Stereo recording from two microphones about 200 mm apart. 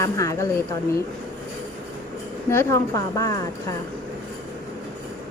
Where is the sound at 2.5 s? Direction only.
15° left (ahead or behind).